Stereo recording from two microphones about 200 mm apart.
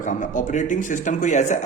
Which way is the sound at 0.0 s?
40° left (ahead or behind).